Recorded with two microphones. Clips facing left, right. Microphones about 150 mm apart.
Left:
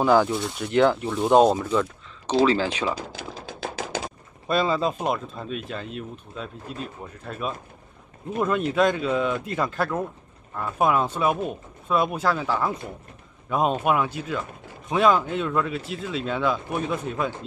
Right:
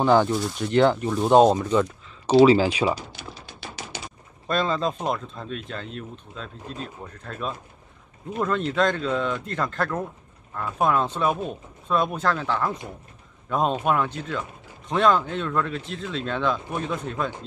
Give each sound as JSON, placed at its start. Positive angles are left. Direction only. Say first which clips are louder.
{"t": 0.0, "sound": "speech", "louder": "even", "side_deg": 5}
{"t": 3.3, "sound": "a sound", "louder": "left 7 dB", "side_deg": 90}
{"t": 4.5, "sound": "a man's voice", "louder": "left 1 dB", "side_deg": 5}